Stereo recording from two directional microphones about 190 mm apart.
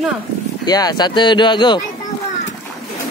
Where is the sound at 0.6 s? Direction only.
20° left (ahead or behind).